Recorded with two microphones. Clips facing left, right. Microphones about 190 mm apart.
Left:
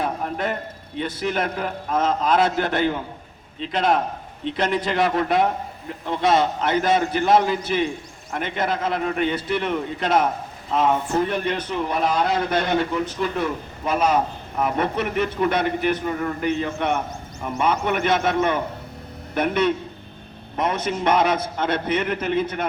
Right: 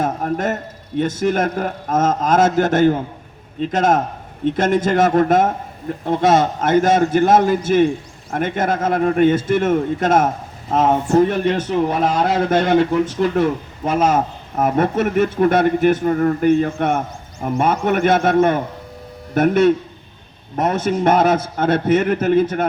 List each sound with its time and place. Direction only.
0.0 s a man's voice: 45° right (ahead or behind)
13.8 s a man's voice: 50° right (ahead or behind)